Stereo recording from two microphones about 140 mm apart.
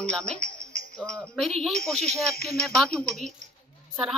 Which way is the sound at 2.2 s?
90° left.